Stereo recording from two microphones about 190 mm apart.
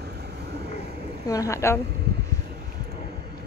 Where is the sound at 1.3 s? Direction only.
15° left (ahead or behind).